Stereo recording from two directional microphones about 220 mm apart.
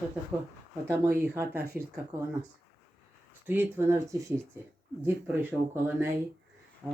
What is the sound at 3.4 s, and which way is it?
Speech, 10° right (ahead or behind).